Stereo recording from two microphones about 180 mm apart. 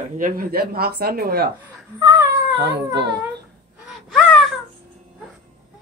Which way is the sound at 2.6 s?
70° right (ahead or behind).